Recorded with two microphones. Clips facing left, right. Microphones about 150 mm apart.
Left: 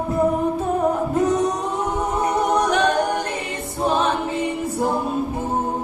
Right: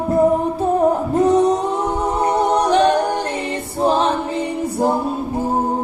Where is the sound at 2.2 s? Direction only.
30° right (ahead or behind).